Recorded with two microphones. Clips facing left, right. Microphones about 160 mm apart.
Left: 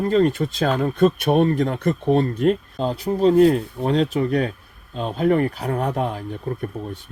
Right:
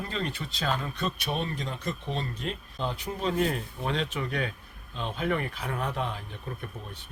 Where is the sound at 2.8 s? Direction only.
40° left (ahead or behind).